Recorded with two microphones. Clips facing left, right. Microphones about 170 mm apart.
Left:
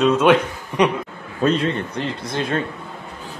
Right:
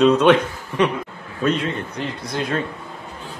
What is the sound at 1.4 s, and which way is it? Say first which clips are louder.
Speech: left 2 dB; 30° left (ahead or behind).